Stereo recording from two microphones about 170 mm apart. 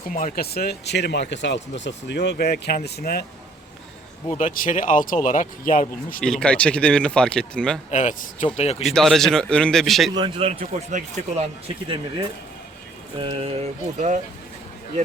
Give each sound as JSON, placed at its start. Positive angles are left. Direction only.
{"t": 0.1, "sound": "speech", "side_deg": 55}
{"t": 4.4, "sound": "speech", "side_deg": 50}
{"t": 6.2, "sound": "speech", "side_deg": 5}
{"t": 7.9, "sound": "speech", "side_deg": 45}
{"t": 8.9, "sound": "speech", "side_deg": 0}
{"t": 10.2, "sound": "speech", "side_deg": -30}
{"t": 11.9, "sound": "speech", "side_deg": -30}